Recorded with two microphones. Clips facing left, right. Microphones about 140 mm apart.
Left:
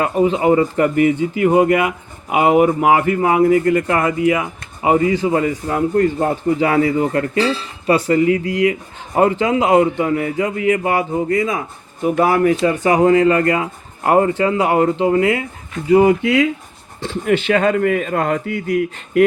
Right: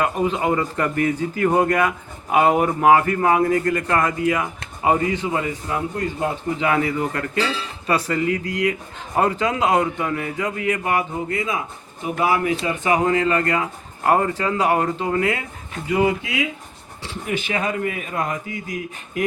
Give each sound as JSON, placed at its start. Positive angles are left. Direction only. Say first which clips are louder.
{"t": 0.0, "sound": "a man's voice", "louder": "left 5 dB", "side_deg": 25}
{"t": 12.1, "sound": "speech", "louder": "left 5 dB", "side_deg": 45}
{"t": 15.9, "sound": "a man's voice", "louder": "left 8 dB", "side_deg": 40}
{"t": 16.2, "sound": "a man's voice", "louder": "left 10 dB", "side_deg": 60}